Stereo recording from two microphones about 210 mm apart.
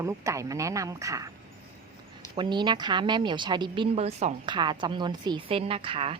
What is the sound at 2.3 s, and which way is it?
A woman's voice, 20° right (ahead or behind).